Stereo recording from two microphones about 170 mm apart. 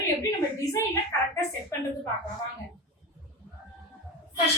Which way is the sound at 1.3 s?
15° left (ahead or behind).